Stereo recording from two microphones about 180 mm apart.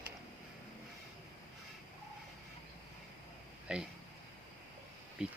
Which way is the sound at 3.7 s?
5° right (ahead or behind).